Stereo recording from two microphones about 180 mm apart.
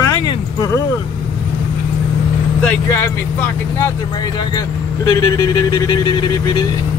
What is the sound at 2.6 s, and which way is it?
Speech, 10° left (ahead or behind).